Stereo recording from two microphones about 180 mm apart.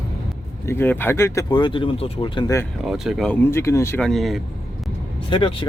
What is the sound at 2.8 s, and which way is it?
Speech, centre (ahead or behind).